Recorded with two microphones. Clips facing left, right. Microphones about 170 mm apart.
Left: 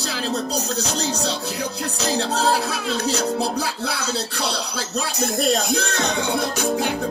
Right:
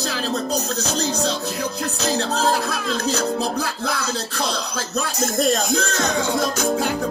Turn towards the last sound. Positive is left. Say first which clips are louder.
# right 1 dB
turn(degrees=70)  # may be behind; listen again after turning